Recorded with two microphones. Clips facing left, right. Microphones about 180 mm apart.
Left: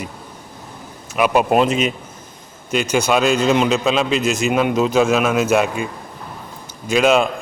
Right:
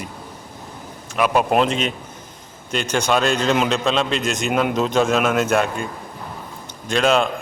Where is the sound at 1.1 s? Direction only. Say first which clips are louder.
Left 2 dB; 5° left (ahead or behind).